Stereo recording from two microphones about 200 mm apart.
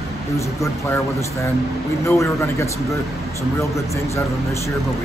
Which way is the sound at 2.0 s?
15° left (ahead or behind).